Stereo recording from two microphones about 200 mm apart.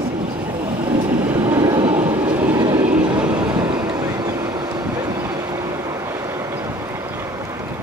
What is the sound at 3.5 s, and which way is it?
Train, 20° right (ahead or behind).